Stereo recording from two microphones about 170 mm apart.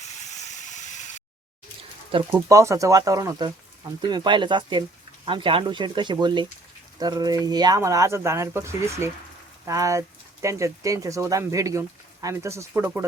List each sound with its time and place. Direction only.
0.2 s steam: 45° left (ahead or behind)
2.1 s speech: 30° right (ahead or behind)
2.5 s speech: 20° right (ahead or behind)